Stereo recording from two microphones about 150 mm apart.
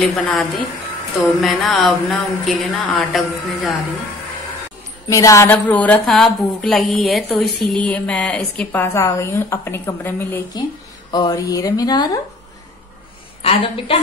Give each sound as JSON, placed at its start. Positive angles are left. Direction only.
{"t": 0.3, "sound": "speech", "side_deg": 0}
{"t": 5.1, "sound": "a woman's voice", "side_deg": 20}
{"t": 11.1, "sound": "speech", "side_deg": 25}
{"t": 13.4, "sound": "a woman's voice", "side_deg": 40}